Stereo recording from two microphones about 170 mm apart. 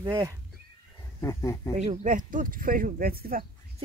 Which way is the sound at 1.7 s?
45° right (ahead or behind).